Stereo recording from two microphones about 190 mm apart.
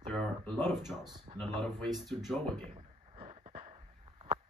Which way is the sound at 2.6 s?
35° right (ahead or behind).